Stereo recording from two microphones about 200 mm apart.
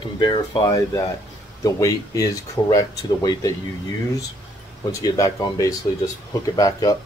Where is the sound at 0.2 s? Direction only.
25° left (ahead or behind).